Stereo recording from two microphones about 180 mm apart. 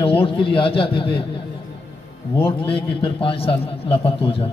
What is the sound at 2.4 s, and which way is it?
A man's voice, 30° left (ahead or behind).